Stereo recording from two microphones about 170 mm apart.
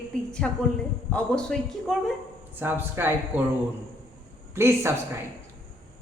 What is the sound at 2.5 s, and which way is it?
Speech, 10° right (ahead or behind).